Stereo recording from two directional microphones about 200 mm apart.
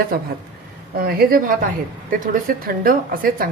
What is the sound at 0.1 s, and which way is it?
A woman's voice, 50° right (ahead or behind).